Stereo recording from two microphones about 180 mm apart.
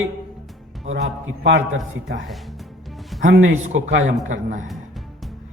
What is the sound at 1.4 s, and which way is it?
Speech, 90° right.